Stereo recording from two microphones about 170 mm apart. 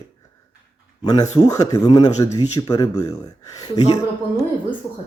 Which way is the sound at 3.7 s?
40° left (ahead or behind).